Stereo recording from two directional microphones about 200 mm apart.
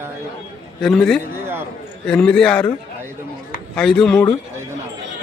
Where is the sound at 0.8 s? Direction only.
5° left (ahead or behind).